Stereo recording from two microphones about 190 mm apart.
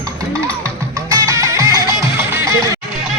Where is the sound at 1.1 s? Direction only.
15° right (ahead or behind).